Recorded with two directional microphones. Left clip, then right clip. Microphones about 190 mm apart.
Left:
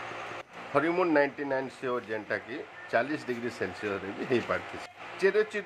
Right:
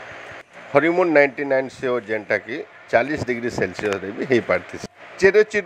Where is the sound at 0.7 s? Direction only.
30° right (ahead or behind).